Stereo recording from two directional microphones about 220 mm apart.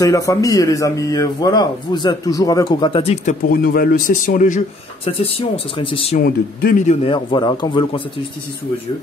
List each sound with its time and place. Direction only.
0.0 s a man's voice: 15° left (ahead or behind)
3.4 s a man's voice: 40° left (ahead or behind); by 6.1 s 25° left (ahead or behind)
6.1 s a man's voice: 40° left (ahead or behind); by 8.0 s 20° left (ahead or behind)